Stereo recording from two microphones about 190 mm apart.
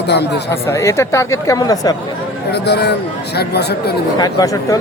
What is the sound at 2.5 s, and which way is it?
Speech, 60° left (ahead or behind).